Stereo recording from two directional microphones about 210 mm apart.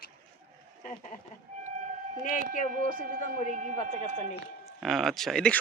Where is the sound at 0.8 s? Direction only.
40° left (ahead or behind).